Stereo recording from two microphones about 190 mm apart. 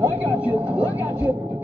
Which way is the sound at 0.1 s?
5° right (ahead or behind).